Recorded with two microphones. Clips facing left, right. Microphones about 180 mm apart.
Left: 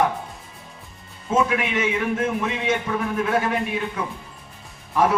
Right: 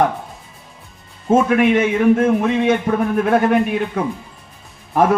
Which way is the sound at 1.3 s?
50° right (ahead or behind).